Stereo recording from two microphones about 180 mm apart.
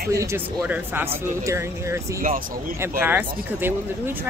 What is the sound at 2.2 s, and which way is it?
Speech, 50° right (ahead or behind).